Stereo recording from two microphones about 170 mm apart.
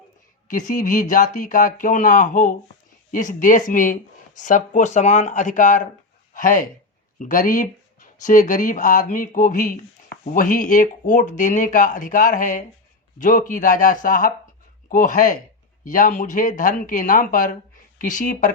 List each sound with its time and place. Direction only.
0.4 s speech: 50° left (ahead or behind)